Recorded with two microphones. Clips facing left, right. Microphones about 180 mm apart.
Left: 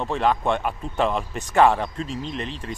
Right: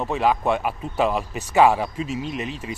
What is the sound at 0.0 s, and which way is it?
Speech, 5° right (ahead or behind).